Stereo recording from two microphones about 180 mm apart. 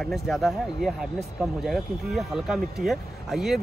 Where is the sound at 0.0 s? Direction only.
Centre (ahead or behind).